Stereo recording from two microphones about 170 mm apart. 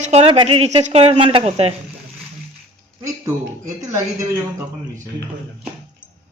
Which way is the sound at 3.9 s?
15° right (ahead or behind).